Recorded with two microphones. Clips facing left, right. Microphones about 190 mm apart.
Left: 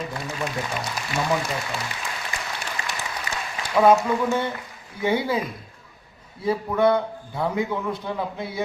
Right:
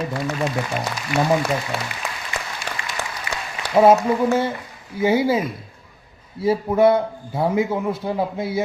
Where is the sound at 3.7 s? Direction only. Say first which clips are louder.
Right 3 dB; 25° right (ahead or behind).